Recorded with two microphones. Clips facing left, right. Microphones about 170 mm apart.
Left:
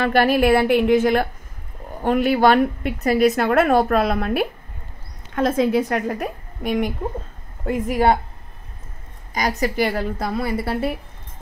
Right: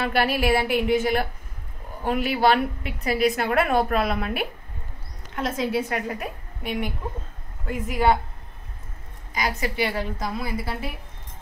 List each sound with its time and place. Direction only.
0.0 s a woman's voice: 45° left (ahead or behind)
5.3 s a woman's voice: 50° left (ahead or behind)
9.3 s a woman's voice: 40° left (ahead or behind); by 10.9 s 60° left (ahead or behind)